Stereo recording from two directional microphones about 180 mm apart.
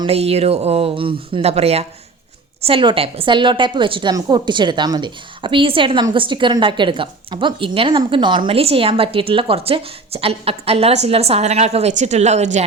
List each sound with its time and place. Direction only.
0.0 s a woman's voice: 35° right (ahead or behind)